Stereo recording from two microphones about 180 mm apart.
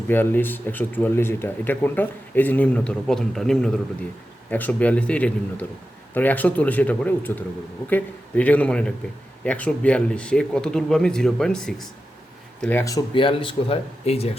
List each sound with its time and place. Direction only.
0.1 s speech: 10° left (ahead or behind)
12.6 s speech: 15° left (ahead or behind); by 14.3 s 35° left (ahead or behind)